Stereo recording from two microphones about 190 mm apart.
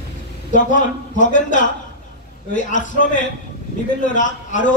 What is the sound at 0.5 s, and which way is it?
A man's voice, 40° left (ahead or behind).